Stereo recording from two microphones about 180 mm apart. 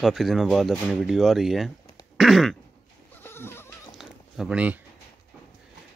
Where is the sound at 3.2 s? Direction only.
15° left (ahead or behind).